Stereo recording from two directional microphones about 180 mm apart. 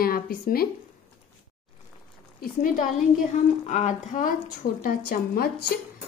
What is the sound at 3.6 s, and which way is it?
Speech, 40° left (ahead or behind).